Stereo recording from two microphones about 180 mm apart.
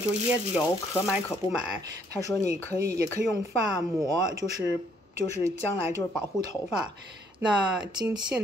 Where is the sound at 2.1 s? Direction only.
20° left (ahead or behind).